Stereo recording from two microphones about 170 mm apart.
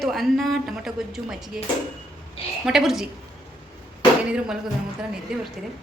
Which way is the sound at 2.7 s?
Centre (ahead or behind).